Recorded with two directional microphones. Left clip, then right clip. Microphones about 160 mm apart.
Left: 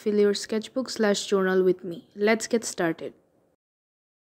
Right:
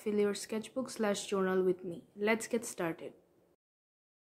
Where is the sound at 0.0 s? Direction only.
25° left (ahead or behind).